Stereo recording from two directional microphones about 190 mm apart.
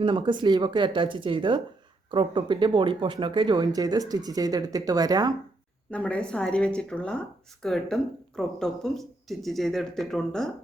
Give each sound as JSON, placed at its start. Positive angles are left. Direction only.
{"t": 0.0, "sound": "speech", "side_deg": -25}
{"t": 5.9, "sound": "speech", "side_deg": 5}